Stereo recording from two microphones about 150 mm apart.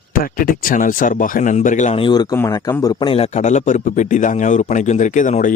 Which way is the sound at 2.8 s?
35° left (ahead or behind).